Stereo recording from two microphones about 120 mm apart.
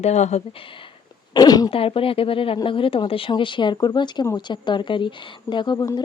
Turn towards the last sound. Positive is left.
turn(degrees=30)  # may be behind; listen again after turning